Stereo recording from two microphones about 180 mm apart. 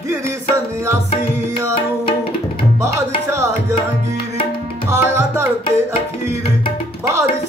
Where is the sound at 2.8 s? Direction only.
15° right (ahead or behind).